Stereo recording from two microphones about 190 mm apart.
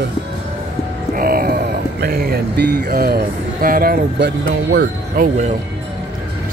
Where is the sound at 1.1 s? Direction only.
50° right (ahead or behind).